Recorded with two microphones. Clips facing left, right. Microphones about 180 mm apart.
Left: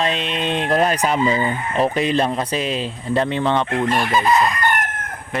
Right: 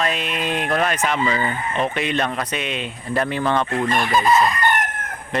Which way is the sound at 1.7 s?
35° left (ahead or behind).